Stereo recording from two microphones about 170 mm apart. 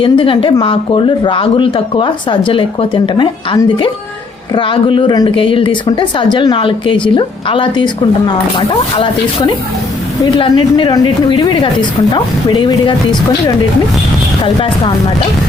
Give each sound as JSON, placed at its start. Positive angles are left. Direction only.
{"t": 0.0, "sound": "a woman's voice", "side_deg": 30}
{"t": 14.4, "sound": "speech", "side_deg": 30}